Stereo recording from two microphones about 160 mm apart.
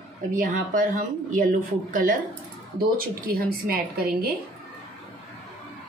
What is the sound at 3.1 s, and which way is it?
A woman's voice, 65° right (ahead or behind).